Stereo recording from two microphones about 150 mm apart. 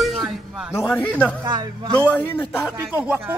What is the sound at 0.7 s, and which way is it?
A man's voice, 15° left (ahead or behind).